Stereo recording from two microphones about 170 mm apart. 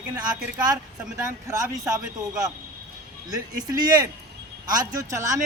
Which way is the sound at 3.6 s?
20° right (ahead or behind).